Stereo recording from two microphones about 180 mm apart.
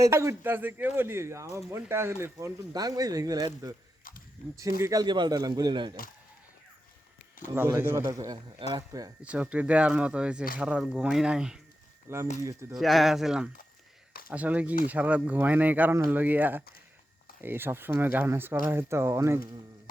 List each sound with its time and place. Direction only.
0.0 s a man's voice: 15° right (ahead or behind)
4.8 s speech: 20° right (ahead or behind)
7.5 s a man's voice: 15° right (ahead or behind)
9.3 s a man's voice: 5° right (ahead or behind)
12.0 s a man's voice: 15° right (ahead or behind)
12.7 s a man's voice: centre (ahead or behind)